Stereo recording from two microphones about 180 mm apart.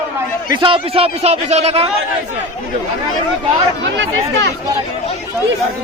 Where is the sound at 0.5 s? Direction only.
30° right (ahead or behind).